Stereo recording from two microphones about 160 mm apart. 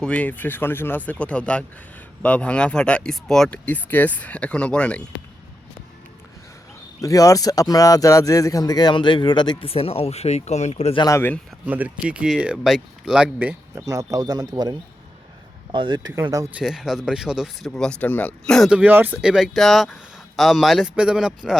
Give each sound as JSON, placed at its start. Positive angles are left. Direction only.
{"t": 0.0, "sound": "speech", "side_deg": 10}
{"t": 7.0, "sound": "speech", "side_deg": 20}
{"t": 10.9, "sound": "speech", "side_deg": 25}
{"t": 11.6, "sound": "speech", "side_deg": -10}
{"t": 13.8, "sound": "speech", "side_deg": -20}
{"t": 16.6, "sound": "speech", "side_deg": -5}